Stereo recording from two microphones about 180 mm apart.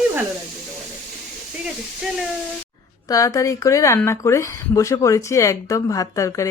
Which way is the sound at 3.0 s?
20° left (ahead or behind).